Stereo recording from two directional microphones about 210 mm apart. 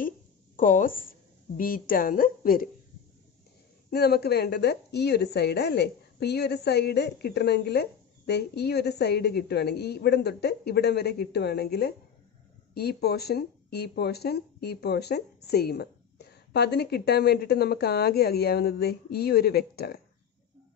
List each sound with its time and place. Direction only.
0.6 s a woman's voice: 40° left (ahead or behind)
3.9 s a woman's voice: 50° left (ahead or behind)